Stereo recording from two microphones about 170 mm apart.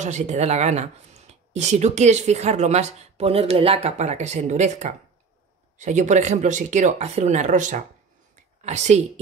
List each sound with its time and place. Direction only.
0.0 s speech: 45° right (ahead or behind)